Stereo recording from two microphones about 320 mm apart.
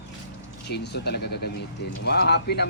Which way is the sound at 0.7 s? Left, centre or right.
Left.